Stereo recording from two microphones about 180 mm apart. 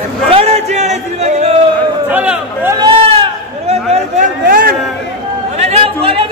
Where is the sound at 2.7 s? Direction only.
25° right (ahead or behind).